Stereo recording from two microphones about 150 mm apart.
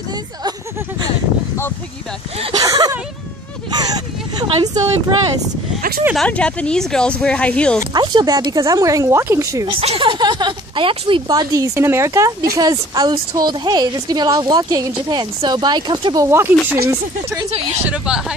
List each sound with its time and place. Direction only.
2.5 s a woman's voice: 25° right (ahead or behind)
5.8 s speech: 70° right (ahead or behind)
6.1 s speech: 5° left (ahead or behind)
7.9 s a woman's voice: 30° right (ahead or behind)
9.7 s a woman's voice: 40° right (ahead or behind)
16.3 s speech: 15° right (ahead or behind)